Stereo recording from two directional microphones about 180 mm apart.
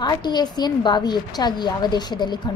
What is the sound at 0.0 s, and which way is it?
Speech, 25° left (ahead or behind).